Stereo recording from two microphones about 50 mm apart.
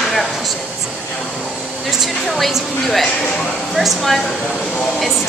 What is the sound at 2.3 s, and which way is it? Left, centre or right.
Speech, centre.